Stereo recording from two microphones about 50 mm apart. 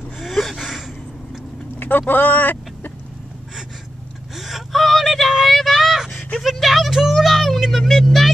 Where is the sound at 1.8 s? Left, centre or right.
Left.